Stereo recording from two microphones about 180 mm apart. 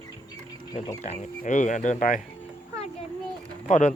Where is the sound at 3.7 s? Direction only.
40° left (ahead or behind).